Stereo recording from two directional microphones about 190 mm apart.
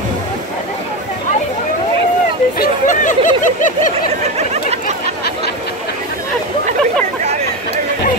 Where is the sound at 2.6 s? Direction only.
40° left (ahead or behind).